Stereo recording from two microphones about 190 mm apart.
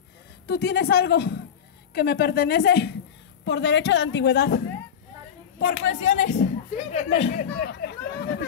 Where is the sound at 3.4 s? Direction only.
70° left (ahead or behind).